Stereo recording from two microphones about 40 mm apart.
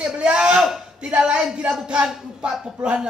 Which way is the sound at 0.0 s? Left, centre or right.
Right.